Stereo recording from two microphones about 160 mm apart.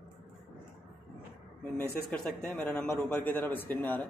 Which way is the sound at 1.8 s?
10° left (ahead or behind).